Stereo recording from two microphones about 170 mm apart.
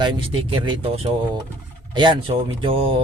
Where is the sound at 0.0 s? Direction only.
30° right (ahead or behind).